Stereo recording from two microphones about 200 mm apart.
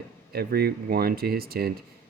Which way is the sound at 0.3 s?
50° right (ahead or behind).